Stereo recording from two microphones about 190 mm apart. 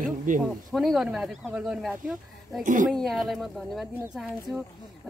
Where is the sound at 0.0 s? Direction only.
45° right (ahead or behind).